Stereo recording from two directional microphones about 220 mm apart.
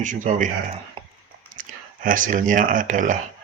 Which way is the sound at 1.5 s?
35° right (ahead or behind).